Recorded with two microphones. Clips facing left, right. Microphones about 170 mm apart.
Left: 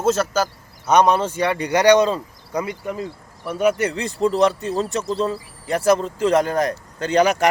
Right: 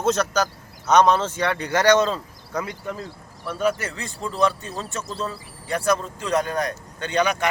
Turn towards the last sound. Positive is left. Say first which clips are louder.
# left 5 dB
turn(degrees=40)  # may be behind; listen again after turning